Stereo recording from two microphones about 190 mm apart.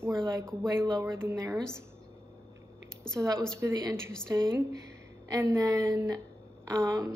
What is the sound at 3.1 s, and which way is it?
Speech, 5° left (ahead or behind).